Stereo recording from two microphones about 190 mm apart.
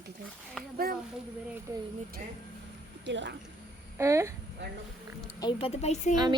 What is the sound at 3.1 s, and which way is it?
Speech, 70° right (ahead or behind).